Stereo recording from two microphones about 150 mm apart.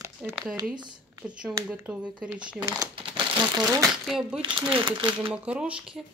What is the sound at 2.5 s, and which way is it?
Speech, 25° right (ahead or behind).